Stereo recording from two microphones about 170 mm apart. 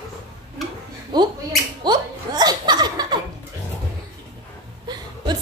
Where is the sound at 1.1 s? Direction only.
25° right (ahead or behind).